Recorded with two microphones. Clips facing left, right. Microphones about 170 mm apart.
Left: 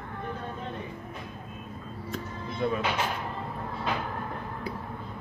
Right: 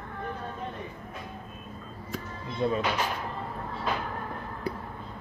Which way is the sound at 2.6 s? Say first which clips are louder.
Right 1 dB; 25° right (ahead or behind).